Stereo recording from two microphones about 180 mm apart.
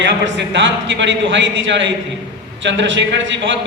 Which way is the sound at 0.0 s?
85° right.